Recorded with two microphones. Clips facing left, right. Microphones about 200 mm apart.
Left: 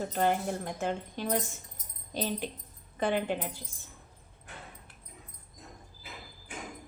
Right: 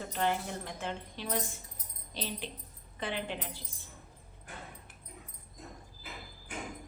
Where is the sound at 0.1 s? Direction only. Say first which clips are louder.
Left 2 dB; 45° left (ahead or behind).